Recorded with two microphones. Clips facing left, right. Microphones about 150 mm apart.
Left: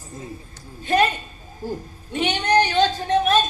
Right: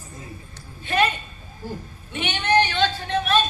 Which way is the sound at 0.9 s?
40° left (ahead or behind).